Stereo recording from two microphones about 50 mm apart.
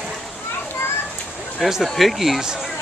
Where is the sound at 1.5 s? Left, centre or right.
Centre.